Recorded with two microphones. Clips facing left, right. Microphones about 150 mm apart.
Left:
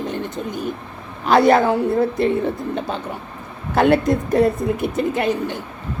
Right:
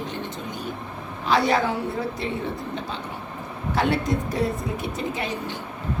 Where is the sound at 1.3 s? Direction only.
50° left (ahead or behind).